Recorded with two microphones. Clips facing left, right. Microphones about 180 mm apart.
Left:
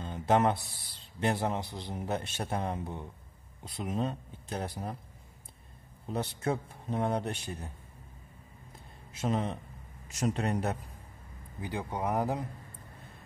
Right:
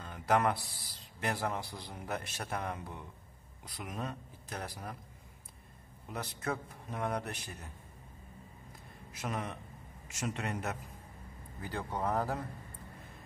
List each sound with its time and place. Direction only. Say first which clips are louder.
0.0 s a man's voice: left 4 dB; 25° left (ahead or behind)
6.0 s a man's voice: left 6 dB; 30° left (ahead or behind)
9.1 s a man's voice: left 7 dB; 25° left (ahead or behind)
11.6 s speech: left 2 dB; 15° left (ahead or behind)